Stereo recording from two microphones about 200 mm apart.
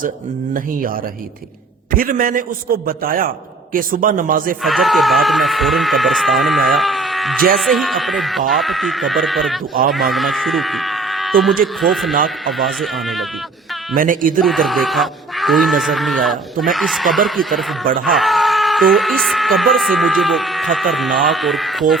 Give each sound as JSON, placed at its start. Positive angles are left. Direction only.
{"t": 2.0, "sound": "a man's voice", "side_deg": -45}
{"t": 4.6, "sound": "speech", "side_deg": 0}
{"t": 13.9, "sound": "a man's voice", "side_deg": -45}
{"t": 14.4, "sound": "speech", "side_deg": 0}